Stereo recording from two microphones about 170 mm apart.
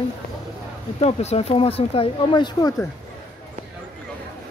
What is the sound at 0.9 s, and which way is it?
Speech, 35° left (ahead or behind).